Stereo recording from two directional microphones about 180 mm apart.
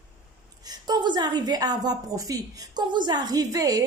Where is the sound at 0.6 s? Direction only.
20° right (ahead or behind).